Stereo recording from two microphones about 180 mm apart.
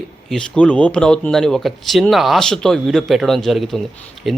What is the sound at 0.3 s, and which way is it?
Speech, 5° left (ahead or behind).